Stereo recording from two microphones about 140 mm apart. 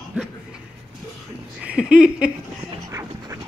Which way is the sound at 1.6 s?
5° right (ahead or behind).